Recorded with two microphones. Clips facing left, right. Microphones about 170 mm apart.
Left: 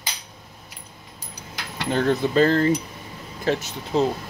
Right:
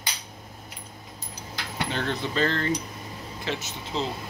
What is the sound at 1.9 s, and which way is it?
Speech, 45° left (ahead or behind).